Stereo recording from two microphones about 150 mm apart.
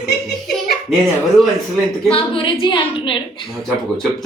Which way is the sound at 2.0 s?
35° left (ahead or behind).